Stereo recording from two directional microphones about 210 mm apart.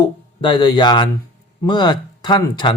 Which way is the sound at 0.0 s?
20° left (ahead or behind).